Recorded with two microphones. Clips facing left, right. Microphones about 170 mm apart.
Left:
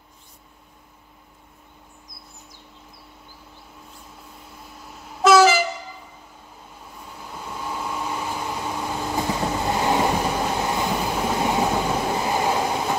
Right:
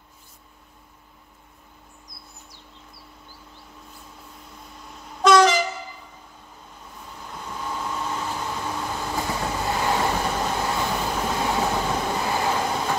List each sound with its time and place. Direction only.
4.8 s vehicle: 5° left (ahead or behind)
7.3 s vehicle: 10° left (ahead or behind)
9.7 s train: 20° left (ahead or behind)